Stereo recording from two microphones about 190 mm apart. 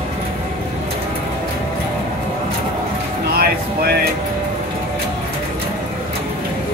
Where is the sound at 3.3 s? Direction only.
55° right (ahead or behind).